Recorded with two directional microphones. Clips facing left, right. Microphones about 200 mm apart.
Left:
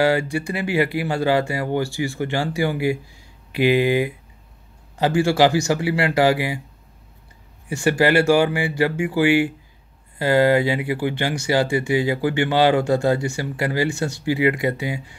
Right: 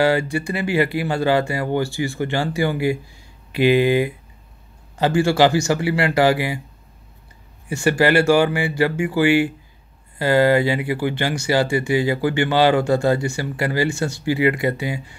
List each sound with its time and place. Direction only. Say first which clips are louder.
0.0 s speech: right 1 dB; 15° left (ahead or behind)
7.7 s speech: right 1 dB; 15° left (ahead or behind)